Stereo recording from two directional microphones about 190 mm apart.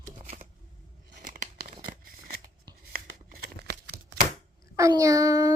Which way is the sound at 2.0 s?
50° right (ahead or behind).